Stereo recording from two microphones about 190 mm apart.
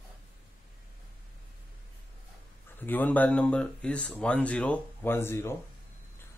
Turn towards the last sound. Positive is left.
turn(degrees=15)  # may be behind; listen again after turning